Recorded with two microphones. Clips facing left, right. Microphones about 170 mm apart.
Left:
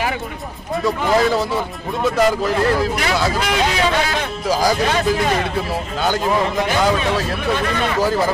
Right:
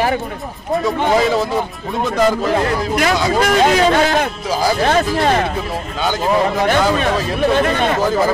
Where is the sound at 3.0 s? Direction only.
45° right (ahead or behind).